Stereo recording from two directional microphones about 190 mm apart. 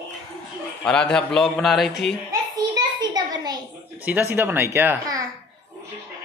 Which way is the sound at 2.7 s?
20° right (ahead or behind).